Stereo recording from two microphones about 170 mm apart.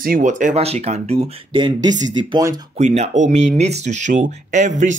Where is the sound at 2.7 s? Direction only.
40° right (ahead or behind).